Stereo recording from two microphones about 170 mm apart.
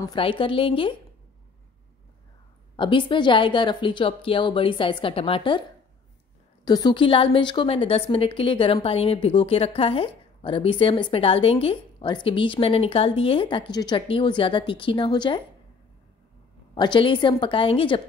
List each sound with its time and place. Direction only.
0.0 s a woman's voice: 30° left (ahead or behind)
2.7 s a woman's voice: 30° left (ahead or behind)
16.7 s a woman's voice: 25° left (ahead or behind)